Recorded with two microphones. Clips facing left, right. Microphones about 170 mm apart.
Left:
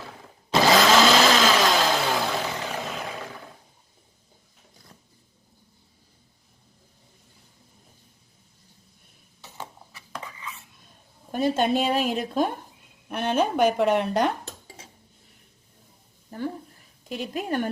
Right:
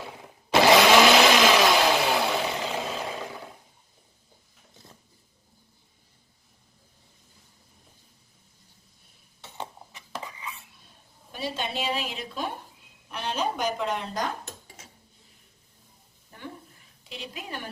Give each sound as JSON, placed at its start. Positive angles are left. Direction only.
{"t": 0.5, "sound": "blender", "side_deg": -15}
{"t": 11.3, "sound": "a woman's voice", "side_deg": 50}
{"t": 16.3, "sound": "a sound", "side_deg": 40}
{"t": 17.0, "sound": "a woman's voice", "side_deg": 45}